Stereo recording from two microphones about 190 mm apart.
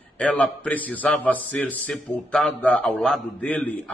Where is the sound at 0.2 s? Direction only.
5° left (ahead or behind).